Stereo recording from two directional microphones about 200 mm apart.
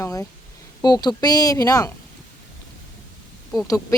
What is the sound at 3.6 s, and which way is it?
Speech, 15° left (ahead or behind).